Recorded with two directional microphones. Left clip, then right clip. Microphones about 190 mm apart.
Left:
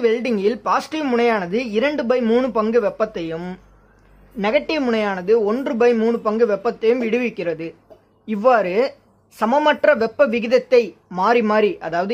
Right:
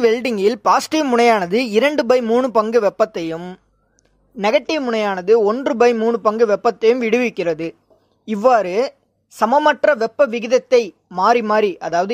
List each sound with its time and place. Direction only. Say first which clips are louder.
0.0 s speech: right 3 dB; 40° right (ahead or behind)
4.4 s a woman's voice: right 2 dB; 35° right (ahead or behind)